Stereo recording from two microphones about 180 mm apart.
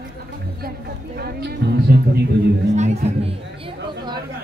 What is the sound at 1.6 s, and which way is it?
Music, 65° right (ahead or behind).